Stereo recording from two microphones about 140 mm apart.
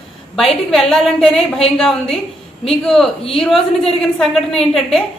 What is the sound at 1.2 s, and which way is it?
Speech, 45° left (ahead or behind).